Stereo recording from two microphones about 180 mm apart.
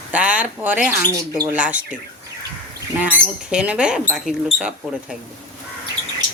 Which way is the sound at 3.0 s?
5° right (ahead or behind).